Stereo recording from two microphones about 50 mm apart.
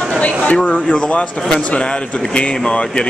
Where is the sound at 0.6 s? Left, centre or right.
Left.